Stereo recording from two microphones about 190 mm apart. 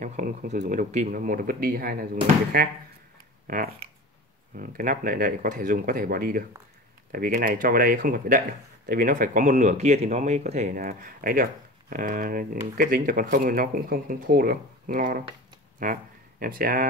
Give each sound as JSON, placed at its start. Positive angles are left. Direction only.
{"t": 0.0, "sound": "speech", "side_deg": -40}